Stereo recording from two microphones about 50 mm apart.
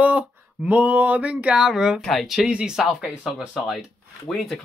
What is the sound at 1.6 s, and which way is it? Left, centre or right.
Speech, centre.